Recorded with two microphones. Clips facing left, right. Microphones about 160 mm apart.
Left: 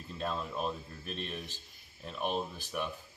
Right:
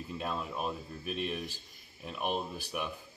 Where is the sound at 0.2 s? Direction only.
10° right (ahead or behind).